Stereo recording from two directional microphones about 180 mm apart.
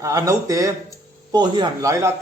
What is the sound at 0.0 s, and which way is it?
A man's voice, 20° right (ahead or behind).